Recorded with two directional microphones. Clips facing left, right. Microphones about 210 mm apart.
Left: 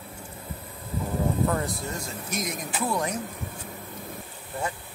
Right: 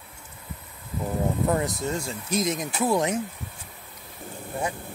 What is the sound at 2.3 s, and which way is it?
Speech, 25° right (ahead or behind).